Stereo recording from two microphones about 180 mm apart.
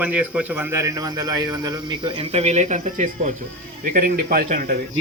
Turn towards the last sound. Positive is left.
turn(degrees=-50)  # may be behind; listen again after turning